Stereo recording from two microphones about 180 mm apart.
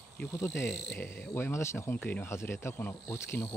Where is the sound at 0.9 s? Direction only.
10° left (ahead or behind).